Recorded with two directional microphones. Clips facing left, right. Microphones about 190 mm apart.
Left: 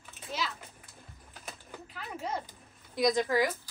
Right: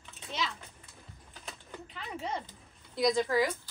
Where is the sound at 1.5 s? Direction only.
5° left (ahead or behind).